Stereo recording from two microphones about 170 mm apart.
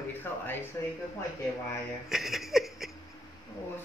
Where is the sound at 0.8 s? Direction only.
20° left (ahead or behind).